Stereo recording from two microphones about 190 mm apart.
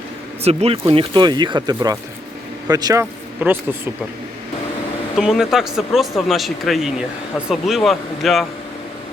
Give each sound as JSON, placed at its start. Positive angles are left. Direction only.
{"t": 0.4, "sound": "speech", "side_deg": -30}
{"t": 5.1, "sound": "speech", "side_deg": -5}